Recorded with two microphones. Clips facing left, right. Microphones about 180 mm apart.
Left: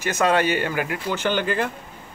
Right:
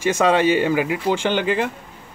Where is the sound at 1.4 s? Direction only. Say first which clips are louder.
Right 3 dB; 90° right.